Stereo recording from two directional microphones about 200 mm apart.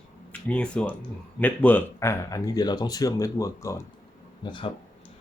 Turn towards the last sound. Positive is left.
turn(degrees=25)  # may be behind; listen again after turning